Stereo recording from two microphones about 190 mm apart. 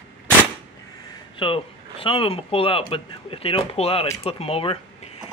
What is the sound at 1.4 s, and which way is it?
Speech, 30° left (ahead or behind).